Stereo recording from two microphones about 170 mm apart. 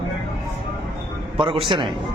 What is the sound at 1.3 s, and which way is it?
Speech, 30° right (ahead or behind).